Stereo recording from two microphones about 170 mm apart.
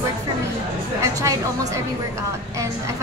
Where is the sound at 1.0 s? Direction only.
20° right (ahead or behind).